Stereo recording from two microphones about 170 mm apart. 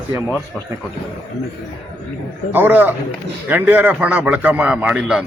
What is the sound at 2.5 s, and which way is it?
A man's voice, 10° right (ahead or behind).